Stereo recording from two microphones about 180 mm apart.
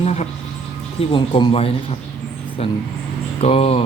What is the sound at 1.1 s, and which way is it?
Speech, 30° left (ahead or behind).